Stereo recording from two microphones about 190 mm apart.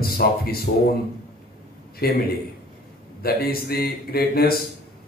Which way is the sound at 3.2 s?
50° left (ahead or behind).